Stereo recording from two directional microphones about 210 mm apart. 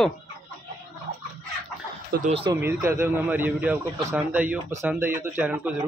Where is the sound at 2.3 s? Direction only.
25° right (ahead or behind).